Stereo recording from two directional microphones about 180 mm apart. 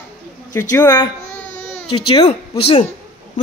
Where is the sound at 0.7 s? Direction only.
15° left (ahead or behind).